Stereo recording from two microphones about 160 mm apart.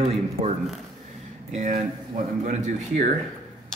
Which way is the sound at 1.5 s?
55° right (ahead or behind).